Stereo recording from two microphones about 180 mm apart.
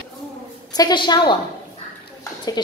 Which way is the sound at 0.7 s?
25° left (ahead or behind).